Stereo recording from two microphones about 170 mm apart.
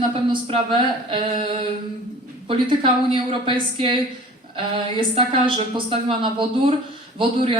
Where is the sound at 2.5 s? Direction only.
30° right (ahead or behind).